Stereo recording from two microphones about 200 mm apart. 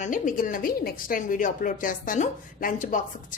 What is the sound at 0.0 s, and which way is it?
A woman's voice, 40° left (ahead or behind).